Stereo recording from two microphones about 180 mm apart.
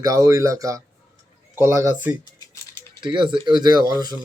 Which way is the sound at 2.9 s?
25° right (ahead or behind).